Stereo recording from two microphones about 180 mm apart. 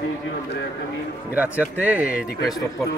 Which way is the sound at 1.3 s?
10° right (ahead or behind).